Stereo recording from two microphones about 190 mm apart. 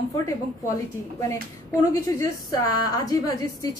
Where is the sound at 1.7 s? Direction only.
20° left (ahead or behind).